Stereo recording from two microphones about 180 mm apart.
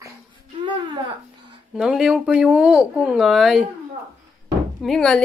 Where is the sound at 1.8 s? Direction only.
5° right (ahead or behind).